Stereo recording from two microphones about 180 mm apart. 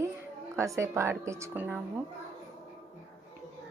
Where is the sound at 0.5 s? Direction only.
15° right (ahead or behind).